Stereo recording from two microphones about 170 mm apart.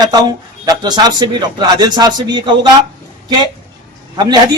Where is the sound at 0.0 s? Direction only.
20° right (ahead or behind).